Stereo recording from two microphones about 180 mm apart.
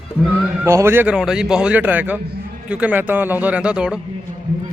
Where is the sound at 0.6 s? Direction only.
15° right (ahead or behind).